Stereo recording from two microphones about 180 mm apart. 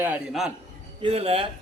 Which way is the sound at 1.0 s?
35° right (ahead or behind).